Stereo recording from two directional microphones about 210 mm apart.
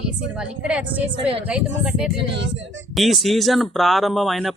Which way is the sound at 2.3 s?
60° right (ahead or behind).